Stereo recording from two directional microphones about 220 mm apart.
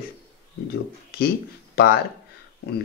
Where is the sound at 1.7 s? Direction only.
45° left (ahead or behind).